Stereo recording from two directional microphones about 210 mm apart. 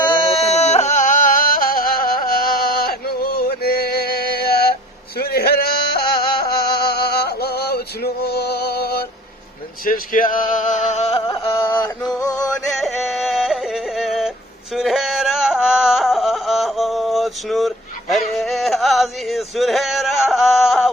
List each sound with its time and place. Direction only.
0.3 s music: 30° left (ahead or behind); by 9.0 s 50° left (ahead or behind)
9.8 s male singing: 40° left (ahead or behind)
11.3 s music: 15° left (ahead or behind)
12.6 s yodeling: centre (ahead or behind)
14.8 s a sound: centre (ahead or behind)
18.1 s male singing: centre (ahead or behind)